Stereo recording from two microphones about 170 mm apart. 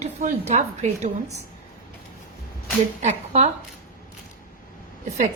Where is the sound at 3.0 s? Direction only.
40° right (ahead or behind).